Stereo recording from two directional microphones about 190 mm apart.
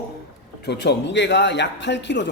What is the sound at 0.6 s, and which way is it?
A man's voice, 60° left (ahead or behind).